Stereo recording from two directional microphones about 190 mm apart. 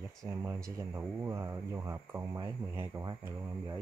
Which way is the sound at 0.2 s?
15° right (ahead or behind).